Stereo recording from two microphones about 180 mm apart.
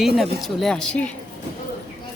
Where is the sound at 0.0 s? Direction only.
Centre (ahead or behind).